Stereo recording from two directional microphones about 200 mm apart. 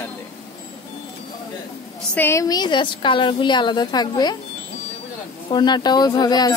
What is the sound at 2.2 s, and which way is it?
A woman's voice, 15° left (ahead or behind).